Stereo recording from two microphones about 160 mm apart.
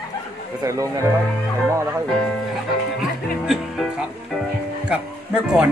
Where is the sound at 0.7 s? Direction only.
20° right (ahead or behind).